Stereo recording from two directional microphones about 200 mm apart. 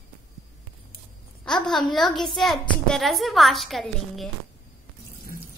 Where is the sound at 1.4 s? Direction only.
5° left (ahead or behind).